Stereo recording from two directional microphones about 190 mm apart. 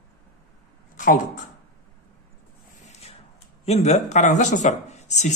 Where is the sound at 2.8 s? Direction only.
35° left (ahead or behind).